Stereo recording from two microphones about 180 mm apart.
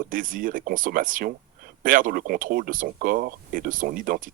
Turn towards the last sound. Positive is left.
turn(degrees=-50)  # may be behind; listen again after turning